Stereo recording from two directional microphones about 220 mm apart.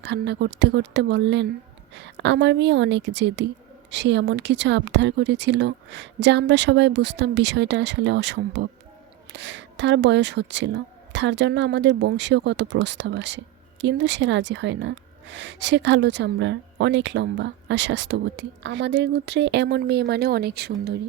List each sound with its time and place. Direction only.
0.0 s speech: 50° right (ahead or behind)